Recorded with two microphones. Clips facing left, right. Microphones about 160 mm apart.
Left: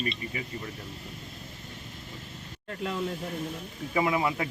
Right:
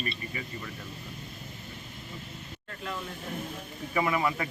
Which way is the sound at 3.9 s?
20° left (ahead or behind).